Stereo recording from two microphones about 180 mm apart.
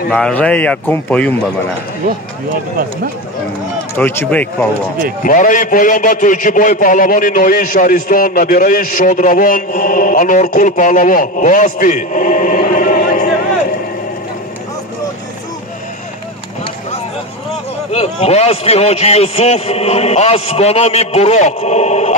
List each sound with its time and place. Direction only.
0.1 s speech: 5° left (ahead or behind)
3.9 s speech: 10° left (ahead or behind)
5.2 s a man's voice: 45° left (ahead or behind)
17.9 s a man's voice: 35° left (ahead or behind)